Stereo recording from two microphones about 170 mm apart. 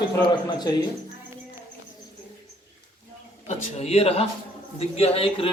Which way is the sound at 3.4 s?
40° left (ahead or behind).